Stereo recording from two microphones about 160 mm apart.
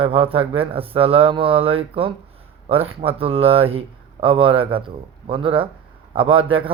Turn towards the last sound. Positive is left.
turn(degrees=-35)  # may be behind; listen again after turning